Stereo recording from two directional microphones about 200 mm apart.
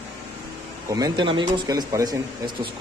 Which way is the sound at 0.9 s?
20° right (ahead or behind).